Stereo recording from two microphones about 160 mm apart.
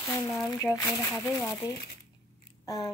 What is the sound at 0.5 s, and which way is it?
Speech, 15° left (ahead or behind).